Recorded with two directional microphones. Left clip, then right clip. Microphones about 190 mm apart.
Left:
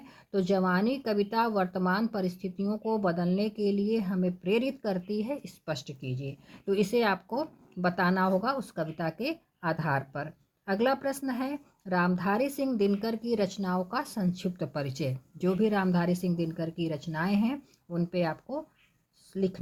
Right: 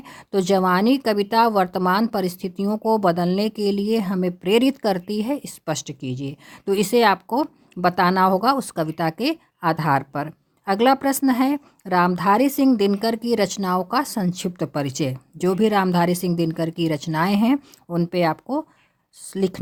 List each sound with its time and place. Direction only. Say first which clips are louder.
0.0 s speech: right 9 dB; 50° right (ahead or behind)